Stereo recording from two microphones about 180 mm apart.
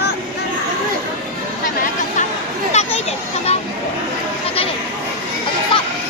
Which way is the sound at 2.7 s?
35° left (ahead or behind).